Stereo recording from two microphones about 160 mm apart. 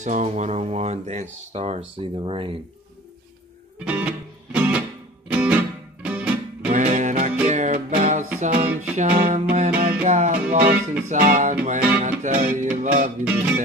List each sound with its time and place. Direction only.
0.0 s speech: 45° right (ahead or behind)
3.8 s music: 10° right (ahead or behind)
6.7 s music: 50° right (ahead or behind)
8.4 s music: 60° right (ahead or behind)
11.1 s speech: 55° right (ahead or behind)
11.6 s music: 50° right (ahead or behind)
13.2 s music: 10° right (ahead or behind)